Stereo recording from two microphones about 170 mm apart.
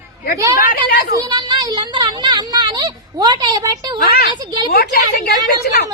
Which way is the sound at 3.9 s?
65° left (ahead or behind).